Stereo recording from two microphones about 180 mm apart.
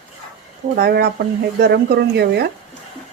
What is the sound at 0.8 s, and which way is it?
A woman's voice, 60° right (ahead or behind).